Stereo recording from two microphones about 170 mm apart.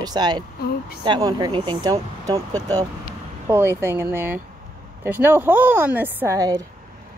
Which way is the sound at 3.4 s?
15° right (ahead or behind).